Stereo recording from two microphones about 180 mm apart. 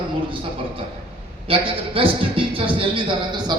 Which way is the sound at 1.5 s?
30° right (ahead or behind).